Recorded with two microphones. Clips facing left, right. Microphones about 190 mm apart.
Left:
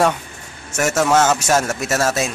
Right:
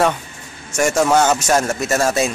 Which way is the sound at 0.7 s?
5° left (ahead or behind).